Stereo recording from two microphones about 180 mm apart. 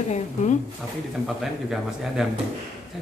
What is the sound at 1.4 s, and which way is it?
Speech, centre (ahead or behind).